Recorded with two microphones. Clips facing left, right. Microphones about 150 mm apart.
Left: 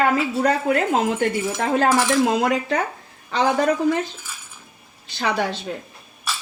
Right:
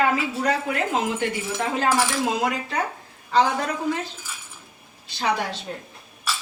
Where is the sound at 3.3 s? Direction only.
75° left (ahead or behind).